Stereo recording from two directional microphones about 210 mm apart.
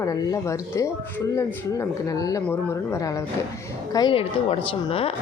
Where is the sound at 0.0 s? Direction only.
15° left (ahead or behind).